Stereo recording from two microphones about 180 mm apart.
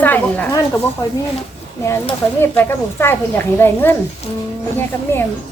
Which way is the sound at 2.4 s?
10° left (ahead or behind).